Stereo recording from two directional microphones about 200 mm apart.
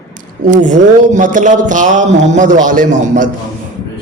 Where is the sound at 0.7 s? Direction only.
40° right (ahead or behind).